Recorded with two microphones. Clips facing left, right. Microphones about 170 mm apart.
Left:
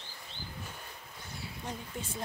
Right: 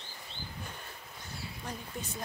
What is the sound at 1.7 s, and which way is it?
Speech, 25° left (ahead or behind).